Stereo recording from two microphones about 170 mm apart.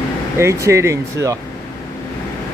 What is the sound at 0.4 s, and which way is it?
Speech, 15° right (ahead or behind).